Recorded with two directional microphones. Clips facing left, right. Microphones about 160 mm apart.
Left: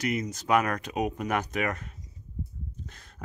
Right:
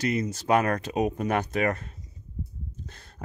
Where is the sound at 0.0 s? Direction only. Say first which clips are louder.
Right 3 dB; 30° right (ahead or behind).